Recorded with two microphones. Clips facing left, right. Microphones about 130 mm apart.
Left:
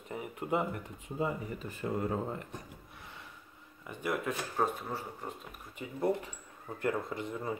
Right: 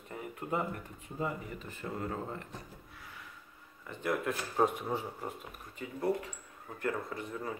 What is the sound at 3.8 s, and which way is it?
Speech, 10° left (ahead or behind).